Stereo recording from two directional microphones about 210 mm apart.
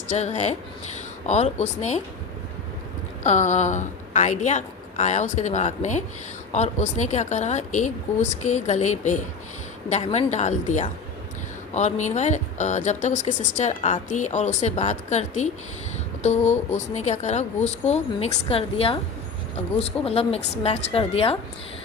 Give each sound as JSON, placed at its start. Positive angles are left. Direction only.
{"t": 0.1, "sound": "speech", "side_deg": 30}
{"t": 3.2, "sound": "a woman's voice", "side_deg": 35}